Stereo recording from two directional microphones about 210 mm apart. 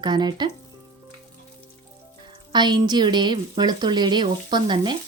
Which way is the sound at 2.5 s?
20° right (ahead or behind).